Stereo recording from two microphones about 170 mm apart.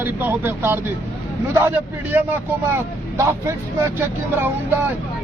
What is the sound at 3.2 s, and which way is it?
Speech, 15° right (ahead or behind).